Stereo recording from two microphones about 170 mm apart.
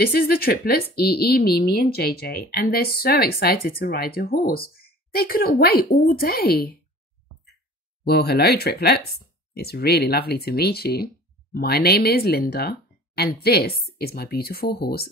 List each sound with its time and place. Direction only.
0.0 s speech: 65° left (ahead or behind)
8.0 s speech: 70° left (ahead or behind)